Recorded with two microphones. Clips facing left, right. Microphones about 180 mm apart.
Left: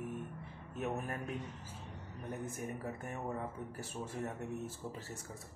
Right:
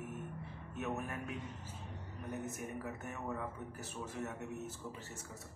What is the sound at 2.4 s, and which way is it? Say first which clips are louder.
Speech: left 1 dB; 30° left (ahead or behind).